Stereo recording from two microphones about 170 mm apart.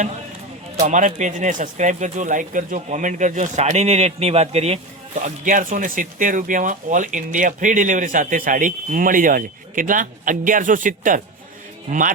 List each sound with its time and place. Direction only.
0.8 s speech: 45° right (ahead or behind)